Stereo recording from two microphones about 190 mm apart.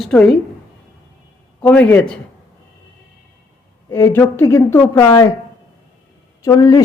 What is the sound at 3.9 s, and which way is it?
A woman's voice, 15° left (ahead or behind).